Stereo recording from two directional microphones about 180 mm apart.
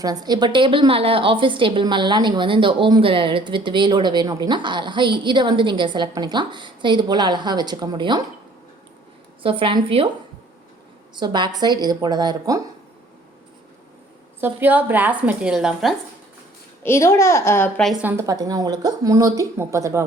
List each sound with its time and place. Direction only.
0.0 s a woman's voice: 20° right (ahead or behind)
9.4 s a woman's voice: 30° right (ahead or behind)
11.2 s a woman's voice: 25° right (ahead or behind)
14.4 s speech: 10° right (ahead or behind)
16.8 s a child's voice: 15° left (ahead or behind)
18.0 s a woman's voice: 15° right (ahead or behind)